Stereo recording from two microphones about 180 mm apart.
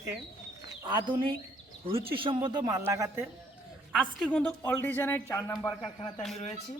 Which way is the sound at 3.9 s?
Centre (ahead or behind).